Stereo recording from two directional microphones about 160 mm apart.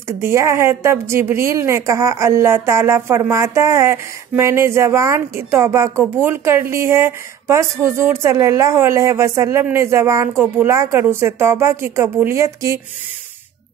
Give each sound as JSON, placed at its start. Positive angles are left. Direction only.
{"t": 0.2, "sound": "a woman's voice", "side_deg": -15}